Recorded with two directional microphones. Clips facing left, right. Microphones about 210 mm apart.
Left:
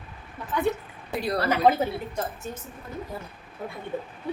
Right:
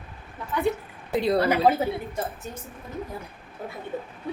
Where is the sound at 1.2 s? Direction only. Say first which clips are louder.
Right 5 dB; 25° right (ahead or behind).